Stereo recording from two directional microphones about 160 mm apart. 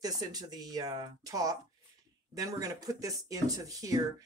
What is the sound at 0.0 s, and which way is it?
Speech, 25° right (ahead or behind).